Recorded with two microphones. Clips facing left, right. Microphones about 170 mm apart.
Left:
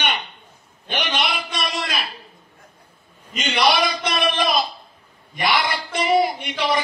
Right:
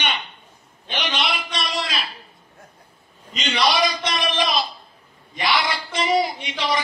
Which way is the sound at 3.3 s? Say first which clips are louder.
Left 2 dB; 55° left (ahead or behind).